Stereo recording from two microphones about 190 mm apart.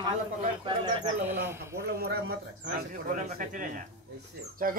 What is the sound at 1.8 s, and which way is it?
Speech, 55° right (ahead or behind).